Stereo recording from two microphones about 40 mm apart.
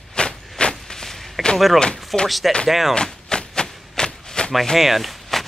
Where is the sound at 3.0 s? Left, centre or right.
Centre.